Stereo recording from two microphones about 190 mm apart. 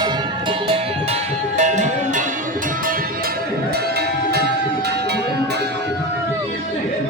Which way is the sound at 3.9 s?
55° right (ahead or behind).